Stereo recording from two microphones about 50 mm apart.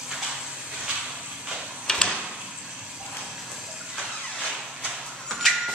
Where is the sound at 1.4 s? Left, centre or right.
Centre.